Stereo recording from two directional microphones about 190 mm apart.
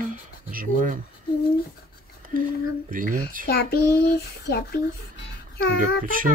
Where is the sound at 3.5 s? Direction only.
55° left (ahead or behind).